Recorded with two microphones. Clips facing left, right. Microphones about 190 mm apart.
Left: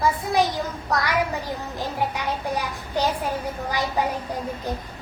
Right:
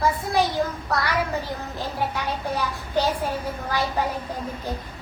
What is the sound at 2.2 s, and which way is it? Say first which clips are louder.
Speech: even; 15° left (ahead or behind).